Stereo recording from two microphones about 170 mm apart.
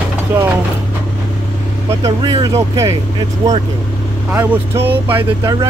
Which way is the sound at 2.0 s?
20° right (ahead or behind).